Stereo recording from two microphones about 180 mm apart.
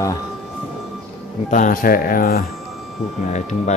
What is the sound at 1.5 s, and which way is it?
Speech, 50° left (ahead or behind).